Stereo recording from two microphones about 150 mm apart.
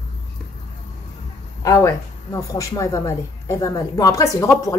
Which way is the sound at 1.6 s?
20° left (ahead or behind).